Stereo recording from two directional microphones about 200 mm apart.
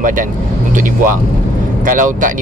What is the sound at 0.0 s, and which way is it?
Speech, 40° right (ahead or behind).